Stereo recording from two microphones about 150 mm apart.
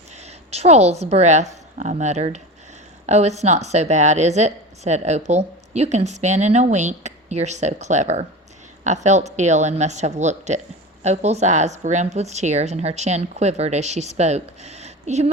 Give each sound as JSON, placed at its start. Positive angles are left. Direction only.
{"t": 0.1, "sound": "a woman's voice", "side_deg": -45}